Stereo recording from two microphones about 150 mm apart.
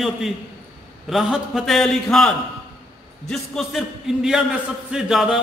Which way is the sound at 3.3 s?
Centre (ahead or behind).